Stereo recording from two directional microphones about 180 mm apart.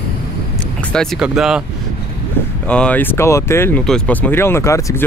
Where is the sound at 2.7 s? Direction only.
5° left (ahead or behind).